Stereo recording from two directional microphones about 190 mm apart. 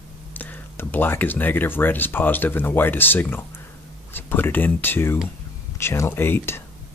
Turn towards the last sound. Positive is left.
turn(degrees=10)  # may be behind; listen again after turning